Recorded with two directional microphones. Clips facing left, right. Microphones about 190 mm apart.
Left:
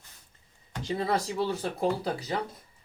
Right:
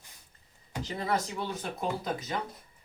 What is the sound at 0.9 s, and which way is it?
Speech, 30° left (ahead or behind).